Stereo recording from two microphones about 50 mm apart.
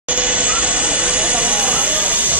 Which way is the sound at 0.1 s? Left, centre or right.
Right.